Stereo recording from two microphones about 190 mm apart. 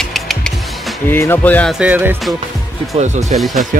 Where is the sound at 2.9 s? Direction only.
35° right (ahead or behind).